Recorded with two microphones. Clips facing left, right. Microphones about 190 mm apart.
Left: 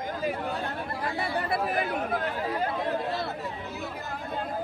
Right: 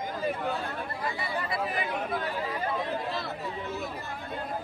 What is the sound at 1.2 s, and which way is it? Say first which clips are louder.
Chatter: left 4 dB; 60° left (ahead or behind).